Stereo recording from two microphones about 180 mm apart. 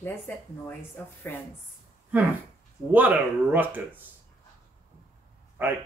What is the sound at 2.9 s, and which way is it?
Speech, 10° right (ahead or behind).